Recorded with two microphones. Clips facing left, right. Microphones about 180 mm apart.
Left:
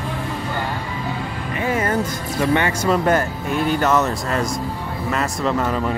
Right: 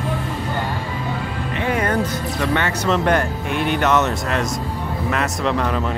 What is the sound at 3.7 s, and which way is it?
Speech, centre (ahead or behind).